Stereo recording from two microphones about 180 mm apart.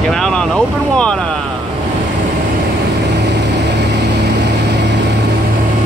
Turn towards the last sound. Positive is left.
turn(degrees=-70)  # may be behind; listen again after turning